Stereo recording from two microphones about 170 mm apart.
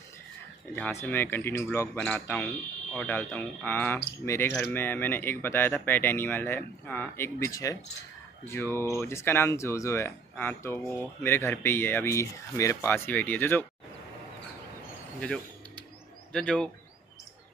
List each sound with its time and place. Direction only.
0.7 s speech: 10° left (ahead or behind)
15.1 s a sound: 5° left (ahead or behind)
16.3 s speech: 5° left (ahead or behind)